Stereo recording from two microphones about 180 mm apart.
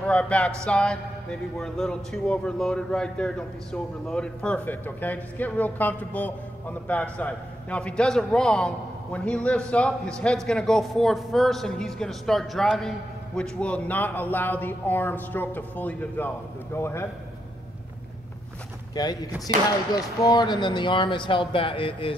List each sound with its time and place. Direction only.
0.0 s a man's voice: 5° left (ahead or behind)
19.0 s speech: 20° left (ahead or behind)